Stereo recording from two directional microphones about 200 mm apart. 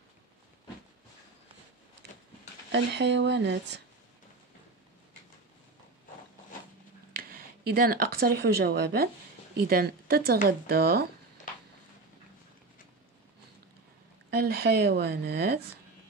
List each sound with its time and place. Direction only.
2.7 s speech: 60° right (ahead or behind)
7.2 s speech: 50° right (ahead or behind)
14.3 s speech: 50° right (ahead or behind)